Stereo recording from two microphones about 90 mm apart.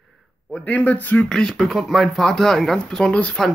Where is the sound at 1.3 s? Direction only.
5° left (ahead or behind).